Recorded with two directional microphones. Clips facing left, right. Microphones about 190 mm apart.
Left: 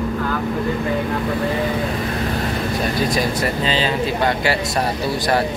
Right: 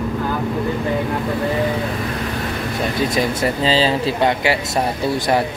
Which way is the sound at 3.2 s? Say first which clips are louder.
Right 1 dB; 25° right (ahead or behind).